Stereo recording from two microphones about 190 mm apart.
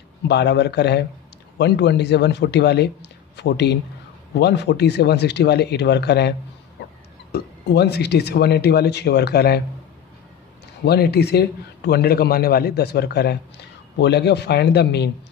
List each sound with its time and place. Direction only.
0.3 s a man's voice: 65° left (ahead or behind)
7.3 s a man's voice: 60° left (ahead or behind)
10.9 s a man's voice: 60° left (ahead or behind)